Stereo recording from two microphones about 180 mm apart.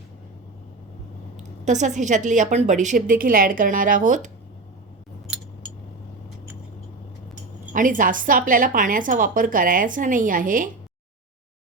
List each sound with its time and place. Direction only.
1.6 s a woman's voice: 40° right (ahead or behind)
7.7 s a woman's voice: 45° right (ahead or behind)